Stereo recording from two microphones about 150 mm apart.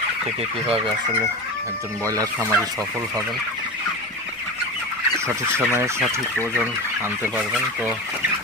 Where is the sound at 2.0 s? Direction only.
25° right (ahead or behind).